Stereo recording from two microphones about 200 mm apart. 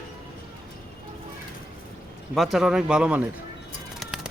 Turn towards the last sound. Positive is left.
turn(degrees=0)  # may be behind; listen again after turning